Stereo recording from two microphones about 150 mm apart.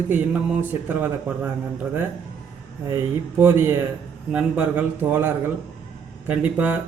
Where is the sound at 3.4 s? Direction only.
15° right (ahead or behind).